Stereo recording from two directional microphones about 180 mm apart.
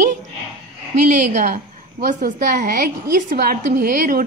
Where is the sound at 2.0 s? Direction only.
55° right (ahead or behind).